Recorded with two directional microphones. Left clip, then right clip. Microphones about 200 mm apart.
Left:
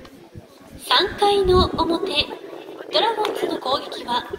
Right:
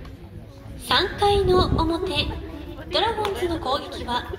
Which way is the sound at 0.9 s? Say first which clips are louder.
Left 2 dB; 30° left (ahead or behind).